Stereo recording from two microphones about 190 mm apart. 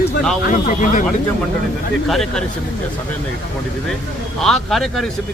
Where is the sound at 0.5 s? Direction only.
40° left (ahead or behind).